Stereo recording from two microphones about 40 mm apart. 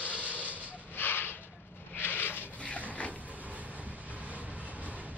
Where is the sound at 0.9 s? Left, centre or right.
Left.